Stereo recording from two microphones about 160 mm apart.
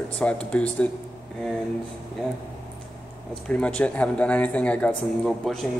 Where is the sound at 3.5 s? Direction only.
10° left (ahead or behind).